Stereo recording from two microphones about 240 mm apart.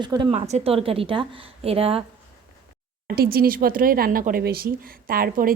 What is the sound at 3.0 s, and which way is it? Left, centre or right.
Speech, right.